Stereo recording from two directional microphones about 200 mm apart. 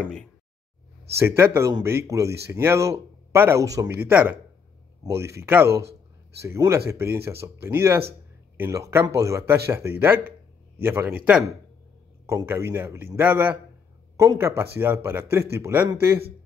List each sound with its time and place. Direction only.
1.1 s speech: 10° right (ahead or behind)